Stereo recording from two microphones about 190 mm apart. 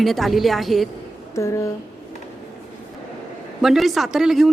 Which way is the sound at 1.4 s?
15° left (ahead or behind).